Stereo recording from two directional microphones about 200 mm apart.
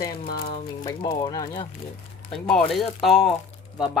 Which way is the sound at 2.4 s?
Centre (ahead or behind).